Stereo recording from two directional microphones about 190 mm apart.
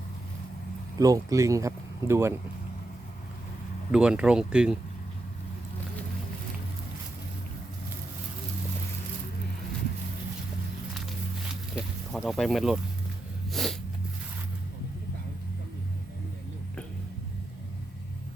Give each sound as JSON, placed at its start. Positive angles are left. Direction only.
{"t": 0.9, "sound": "speech", "side_deg": -20}
{"t": 3.9, "sound": "speech", "side_deg": -5}
{"t": 11.7, "sound": "a sound", "side_deg": 0}